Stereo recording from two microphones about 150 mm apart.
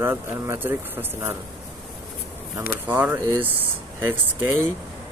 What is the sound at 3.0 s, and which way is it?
Speech, 15° right (ahead or behind).